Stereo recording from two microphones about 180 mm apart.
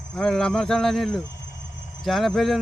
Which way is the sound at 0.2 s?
5° left (ahead or behind).